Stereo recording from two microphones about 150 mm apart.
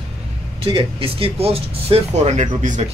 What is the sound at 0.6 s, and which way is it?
Speech, 35° right (ahead or behind).